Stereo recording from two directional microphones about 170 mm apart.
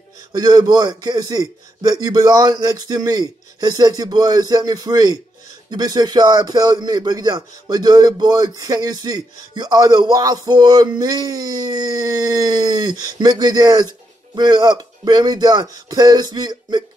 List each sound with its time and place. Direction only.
0.3 s a man's voice: 25° right (ahead or behind)